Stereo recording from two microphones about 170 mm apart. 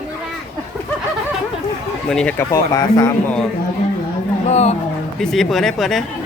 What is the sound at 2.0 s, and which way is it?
Speech, 5° left (ahead or behind).